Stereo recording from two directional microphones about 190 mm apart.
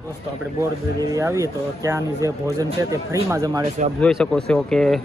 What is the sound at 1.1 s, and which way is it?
Speech, 15° right (ahead or behind).